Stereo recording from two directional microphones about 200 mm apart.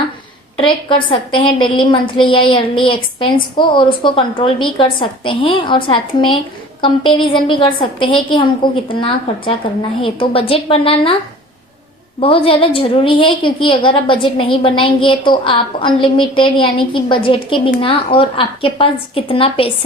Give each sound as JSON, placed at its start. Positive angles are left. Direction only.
{"t": 0.5, "sound": "a woman's voice", "side_deg": 25}
{"t": 12.2, "sound": "a woman's voice", "side_deg": 25}